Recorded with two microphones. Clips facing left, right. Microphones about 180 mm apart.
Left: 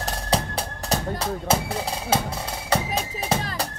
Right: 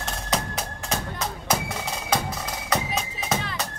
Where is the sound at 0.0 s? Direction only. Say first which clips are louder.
Left 3 dB; 35° left (ahead or behind).